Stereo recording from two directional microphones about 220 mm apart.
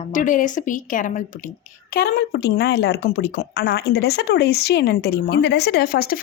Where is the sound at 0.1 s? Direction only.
35° left (ahead or behind).